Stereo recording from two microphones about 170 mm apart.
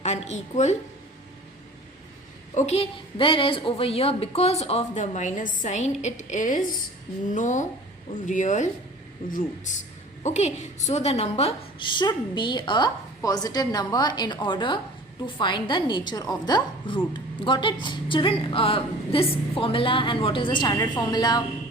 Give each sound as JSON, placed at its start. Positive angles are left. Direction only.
{"t": 0.0, "sound": "a woman's voice", "side_deg": 40}
{"t": 2.6, "sound": "a woman's voice", "side_deg": 40}